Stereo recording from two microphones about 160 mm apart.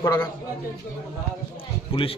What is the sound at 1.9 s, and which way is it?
Speech, 35° left (ahead or behind).